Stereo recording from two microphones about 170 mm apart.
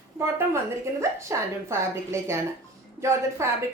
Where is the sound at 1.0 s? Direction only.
15° right (ahead or behind).